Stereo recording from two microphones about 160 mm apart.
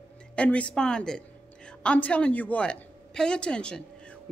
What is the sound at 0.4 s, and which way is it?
A woman's voice, 10° left (ahead or behind).